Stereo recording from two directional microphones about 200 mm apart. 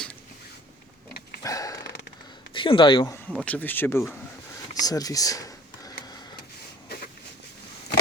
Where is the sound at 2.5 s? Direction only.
25° left (ahead or behind).